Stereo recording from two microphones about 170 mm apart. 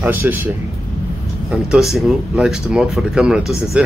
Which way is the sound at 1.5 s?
Centre (ahead or behind).